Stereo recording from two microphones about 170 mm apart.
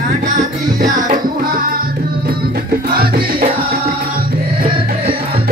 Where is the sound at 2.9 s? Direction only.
60° right (ahead or behind).